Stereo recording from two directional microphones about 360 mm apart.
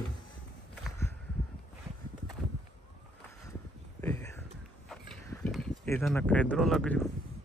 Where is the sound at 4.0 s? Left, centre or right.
Centre.